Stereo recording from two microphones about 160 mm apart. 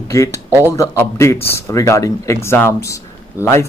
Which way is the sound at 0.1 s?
20° left (ahead or behind).